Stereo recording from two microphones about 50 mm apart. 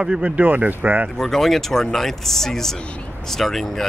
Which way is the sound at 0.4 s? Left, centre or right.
Right.